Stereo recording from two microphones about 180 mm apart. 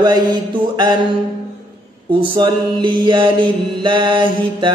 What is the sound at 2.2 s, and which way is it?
Mantra, 25° right (ahead or behind).